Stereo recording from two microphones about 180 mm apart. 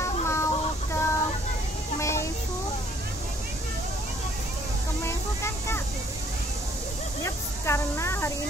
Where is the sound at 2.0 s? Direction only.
15° left (ahead or behind).